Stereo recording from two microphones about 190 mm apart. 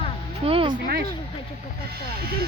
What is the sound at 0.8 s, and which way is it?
Speech, 50° right (ahead or behind).